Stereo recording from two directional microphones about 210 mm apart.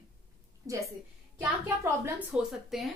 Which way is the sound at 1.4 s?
10° right (ahead or behind).